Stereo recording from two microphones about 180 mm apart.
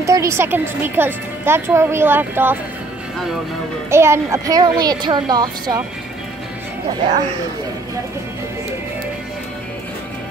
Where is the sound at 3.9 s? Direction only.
15° right (ahead or behind).